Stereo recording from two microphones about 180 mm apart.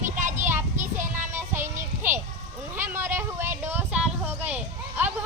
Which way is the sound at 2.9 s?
15° right (ahead or behind).